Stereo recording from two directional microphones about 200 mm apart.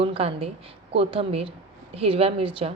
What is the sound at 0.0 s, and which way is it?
A woman's voice, 30° right (ahead or behind).